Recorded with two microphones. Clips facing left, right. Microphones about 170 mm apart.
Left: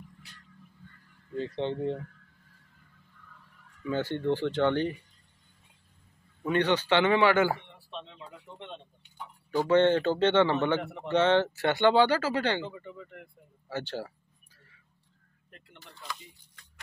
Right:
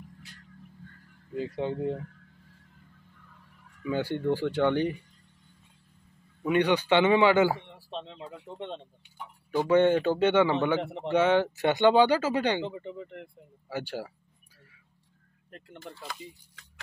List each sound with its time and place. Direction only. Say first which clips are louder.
1.3 s speech: even; 10° right (ahead or behind)
3.8 s speech: right 1 dB; 10° right (ahead or behind)
6.4 s speech: right 2 dB; 15° right (ahead or behind)
7.9 s speech: right 4 dB; 35° right (ahead or behind)
9.7 s speech: right 1 dB; 10° right (ahead or behind)
10.8 s speech: right 4 dB; 25° right (ahead or behind)
11.1 s speech: even; 10° right (ahead or behind)
13.7 s speech: even; 10° right (ahead or behind)
15.5 s speech: right 10 dB; 45° right (ahead or behind)